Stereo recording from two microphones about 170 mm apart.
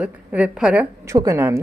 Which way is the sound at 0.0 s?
10° right (ahead or behind).